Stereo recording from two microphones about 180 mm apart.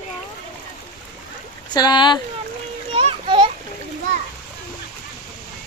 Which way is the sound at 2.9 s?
30° right (ahead or behind).